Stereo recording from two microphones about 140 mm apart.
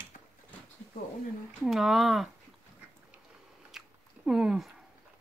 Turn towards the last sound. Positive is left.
turn(degrees=-5)  # may be behind; listen again after turning